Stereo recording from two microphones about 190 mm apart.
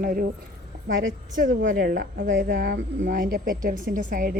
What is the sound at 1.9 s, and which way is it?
A woman's voice, 45° right (ahead or behind).